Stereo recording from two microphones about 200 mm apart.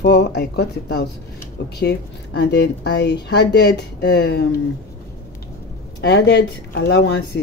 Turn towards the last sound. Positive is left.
turn(degrees=60)  # may be behind; listen again after turning